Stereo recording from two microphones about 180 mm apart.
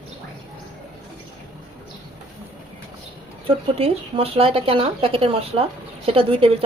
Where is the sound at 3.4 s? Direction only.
30° right (ahead or behind).